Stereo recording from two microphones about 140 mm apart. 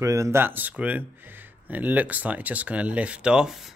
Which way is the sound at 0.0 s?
20° right (ahead or behind).